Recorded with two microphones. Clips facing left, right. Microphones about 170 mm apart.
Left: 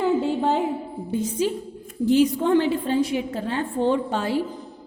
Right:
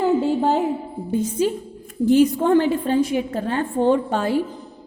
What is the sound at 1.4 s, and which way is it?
A woman's voice, 50° right (ahead or behind).